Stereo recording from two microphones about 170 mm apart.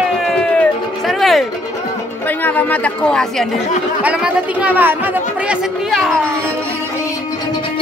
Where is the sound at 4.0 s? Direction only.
5° right (ahead or behind).